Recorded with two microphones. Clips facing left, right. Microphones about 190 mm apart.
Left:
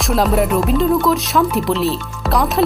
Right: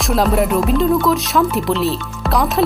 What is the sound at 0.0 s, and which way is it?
Speech, centre (ahead or behind).